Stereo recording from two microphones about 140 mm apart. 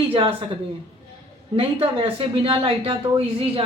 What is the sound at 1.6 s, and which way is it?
Speech, 40° right (ahead or behind).